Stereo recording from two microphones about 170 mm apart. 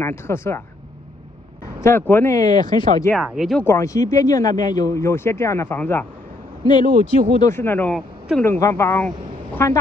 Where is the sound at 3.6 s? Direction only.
15° left (ahead or behind).